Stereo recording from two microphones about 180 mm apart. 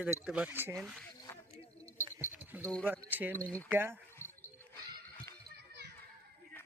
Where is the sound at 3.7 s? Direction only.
10° right (ahead or behind).